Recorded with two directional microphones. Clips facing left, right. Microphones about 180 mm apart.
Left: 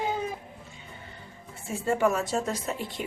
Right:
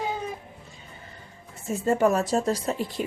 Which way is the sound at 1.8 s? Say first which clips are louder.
Right 3 dB; 40° right (ahead or behind).